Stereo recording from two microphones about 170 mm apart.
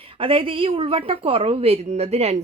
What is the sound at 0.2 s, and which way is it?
Speech, 30° right (ahead or behind).